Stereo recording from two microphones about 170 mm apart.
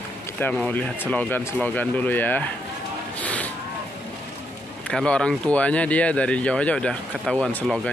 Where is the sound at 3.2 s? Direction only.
10° left (ahead or behind).